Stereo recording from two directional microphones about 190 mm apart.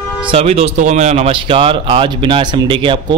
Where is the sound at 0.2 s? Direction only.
30° right (ahead or behind).